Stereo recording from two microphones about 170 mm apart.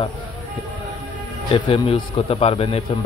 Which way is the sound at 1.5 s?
30° left (ahead or behind).